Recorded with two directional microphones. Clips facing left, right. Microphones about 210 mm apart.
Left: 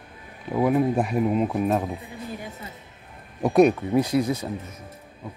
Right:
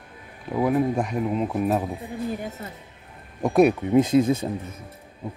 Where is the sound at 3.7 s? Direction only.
15° right (ahead or behind).